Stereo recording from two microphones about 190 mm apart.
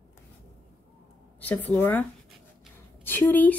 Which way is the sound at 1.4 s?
10° left (ahead or behind).